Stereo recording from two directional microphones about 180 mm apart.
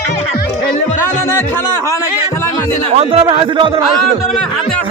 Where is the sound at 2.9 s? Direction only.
30° right (ahead or behind).